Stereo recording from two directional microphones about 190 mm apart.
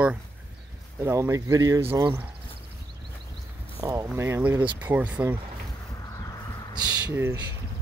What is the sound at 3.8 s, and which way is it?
Speech, 15° right (ahead or behind).